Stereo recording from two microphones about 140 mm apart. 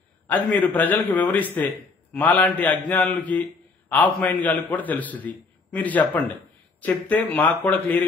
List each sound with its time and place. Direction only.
0.3 s a man's voice: 10° left (ahead or behind)